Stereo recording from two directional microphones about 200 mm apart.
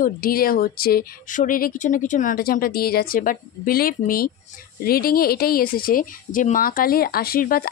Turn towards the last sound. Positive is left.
turn(degrees=45)  # may be behind; listen again after turning